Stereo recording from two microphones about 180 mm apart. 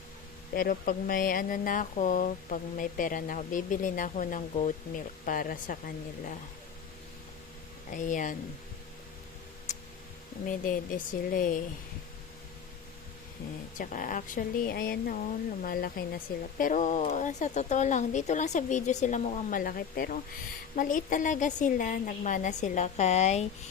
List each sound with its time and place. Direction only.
0.5 s speech: 50° left (ahead or behind)
7.9 s speech: 45° left (ahead or behind)
10.4 s speech: 45° left (ahead or behind)
13.7 s speech: 45° left (ahead or behind)